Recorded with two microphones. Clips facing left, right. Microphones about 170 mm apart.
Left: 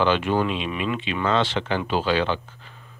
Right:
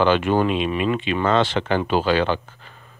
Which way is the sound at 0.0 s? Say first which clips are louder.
Right 3 dB; 50° right (ahead or behind).